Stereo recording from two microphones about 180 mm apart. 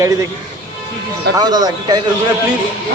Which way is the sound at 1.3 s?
20° right (ahead or behind).